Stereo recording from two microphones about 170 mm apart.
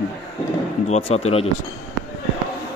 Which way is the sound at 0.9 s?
40° left (ahead or behind).